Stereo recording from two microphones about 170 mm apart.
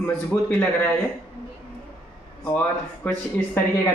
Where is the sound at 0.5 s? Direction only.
10° left (ahead or behind).